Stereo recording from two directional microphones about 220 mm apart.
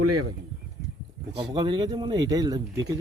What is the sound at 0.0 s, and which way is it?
Speech, 90° right.